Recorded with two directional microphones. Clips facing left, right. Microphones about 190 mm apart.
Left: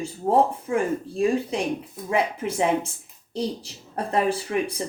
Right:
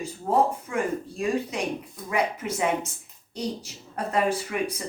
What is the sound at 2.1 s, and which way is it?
Speech, 30° left (ahead or behind).